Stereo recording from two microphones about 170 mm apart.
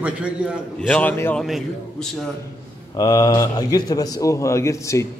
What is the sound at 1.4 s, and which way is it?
Speech, centre (ahead or behind).